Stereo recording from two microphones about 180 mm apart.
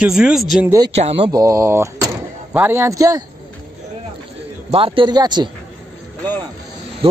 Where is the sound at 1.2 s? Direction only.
20° right (ahead or behind).